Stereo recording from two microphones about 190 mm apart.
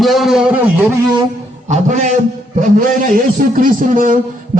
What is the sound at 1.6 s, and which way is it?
A man's voice, 40° right (ahead or behind).